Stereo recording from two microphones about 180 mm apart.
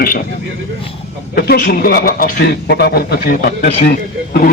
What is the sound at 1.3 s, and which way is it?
A man's voice, 60° left (ahead or behind).